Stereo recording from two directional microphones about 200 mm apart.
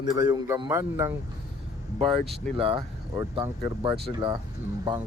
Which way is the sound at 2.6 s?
25° right (ahead or behind).